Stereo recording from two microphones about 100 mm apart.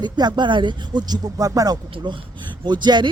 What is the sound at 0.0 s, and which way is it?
Speech, 45° right (ahead or behind).